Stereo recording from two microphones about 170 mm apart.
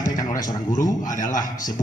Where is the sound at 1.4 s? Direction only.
50° left (ahead or behind).